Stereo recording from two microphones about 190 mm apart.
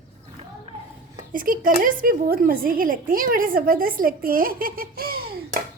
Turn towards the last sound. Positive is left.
turn(degrees=-55)  # may be behind; listen again after turning